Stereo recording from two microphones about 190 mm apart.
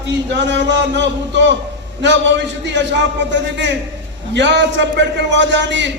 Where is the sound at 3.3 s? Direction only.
70° right (ahead or behind).